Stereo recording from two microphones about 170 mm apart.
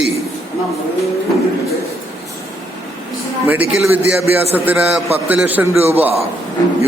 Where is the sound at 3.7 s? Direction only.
5° right (ahead or behind).